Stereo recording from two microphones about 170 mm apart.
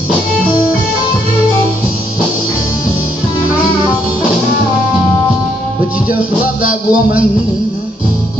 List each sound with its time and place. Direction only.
6.6 s music: 55° left (ahead or behind)